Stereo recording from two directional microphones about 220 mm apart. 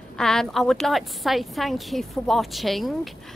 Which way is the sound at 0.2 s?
Centre (ahead or behind).